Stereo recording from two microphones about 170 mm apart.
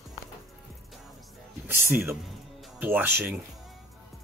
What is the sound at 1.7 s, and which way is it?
Music, 15° right (ahead or behind).